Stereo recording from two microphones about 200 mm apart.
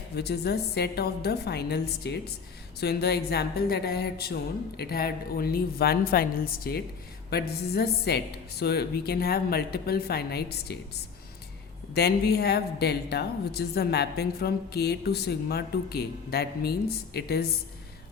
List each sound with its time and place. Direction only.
0.2 s a woman's voice: 50° left (ahead or behind)